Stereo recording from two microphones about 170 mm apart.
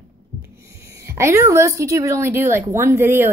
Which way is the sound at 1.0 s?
15° right (ahead or behind).